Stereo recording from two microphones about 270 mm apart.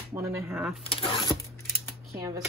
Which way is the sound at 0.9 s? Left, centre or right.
Centre.